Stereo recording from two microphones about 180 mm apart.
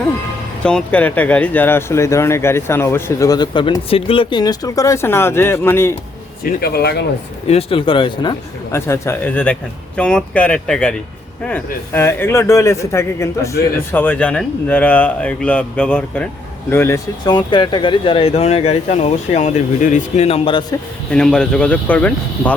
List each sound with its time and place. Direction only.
0.6 s speech: 5° left (ahead or behind)
6.4 s a man's voice: 55° left (ahead or behind)
7.4 s speech: 35° left (ahead or behind)
8.7 s speech: 15° left (ahead or behind)
17.2 s speech: 25° left (ahead or behind)
21.1 s speech: 5° left (ahead or behind)